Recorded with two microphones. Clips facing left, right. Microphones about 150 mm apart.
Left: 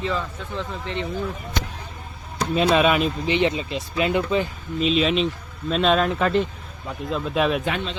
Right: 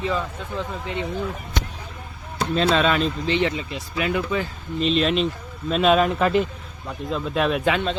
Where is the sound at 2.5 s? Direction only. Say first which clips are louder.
Left 2 dB; 15° left (ahead or behind).